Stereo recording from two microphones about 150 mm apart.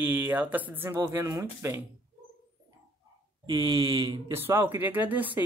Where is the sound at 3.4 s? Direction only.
25° right (ahead or behind).